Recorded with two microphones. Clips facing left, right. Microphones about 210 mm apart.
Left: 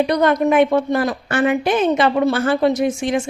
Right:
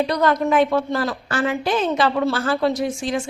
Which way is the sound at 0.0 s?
20° left (ahead or behind).